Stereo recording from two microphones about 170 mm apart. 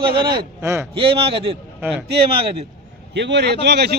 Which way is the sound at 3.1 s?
90° right.